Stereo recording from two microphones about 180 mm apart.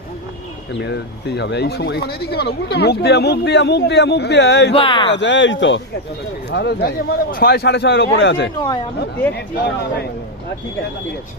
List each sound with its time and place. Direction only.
0.7 s speech: 75° left (ahead or behind)
4.7 s speech: 30° left (ahead or behind)
5.0 s speech: 85° left
6.5 s speech: 70° left (ahead or behind); by 8.4 s 85° left
9.3 s speech: 65° left (ahead or behind)